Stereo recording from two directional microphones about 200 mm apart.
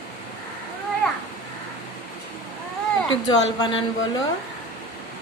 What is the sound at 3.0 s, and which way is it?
A woman's voice, 20° left (ahead or behind).